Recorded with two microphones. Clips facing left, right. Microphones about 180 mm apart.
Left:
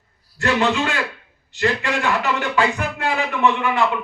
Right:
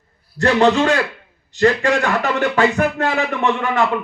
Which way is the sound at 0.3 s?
40° right (ahead or behind).